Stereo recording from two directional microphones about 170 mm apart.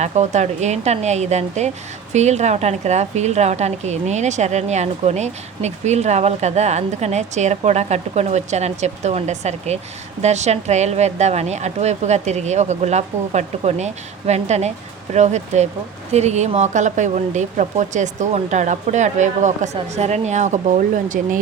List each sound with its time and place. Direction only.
0.0 s a woman's voice: 45° right (ahead or behind)